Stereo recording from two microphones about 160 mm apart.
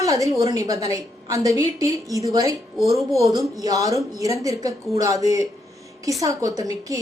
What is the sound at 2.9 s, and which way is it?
Speech, centre (ahead or behind).